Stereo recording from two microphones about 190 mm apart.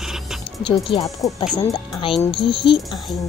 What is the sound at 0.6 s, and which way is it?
Speech, 25° left (ahead or behind).